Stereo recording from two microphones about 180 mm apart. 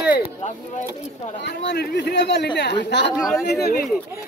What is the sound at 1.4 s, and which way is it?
Speech, 75° left (ahead or behind).